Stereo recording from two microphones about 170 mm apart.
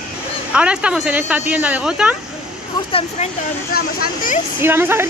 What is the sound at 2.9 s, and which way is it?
Speech, 35° left (ahead or behind).